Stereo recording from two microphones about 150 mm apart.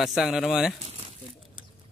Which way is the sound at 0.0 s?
Centre (ahead or behind).